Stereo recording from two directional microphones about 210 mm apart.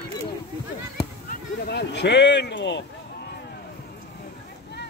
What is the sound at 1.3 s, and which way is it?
Speech, 50° left (ahead or behind).